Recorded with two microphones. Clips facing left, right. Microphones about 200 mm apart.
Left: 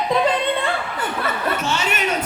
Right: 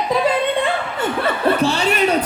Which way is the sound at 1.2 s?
30° right (ahead or behind).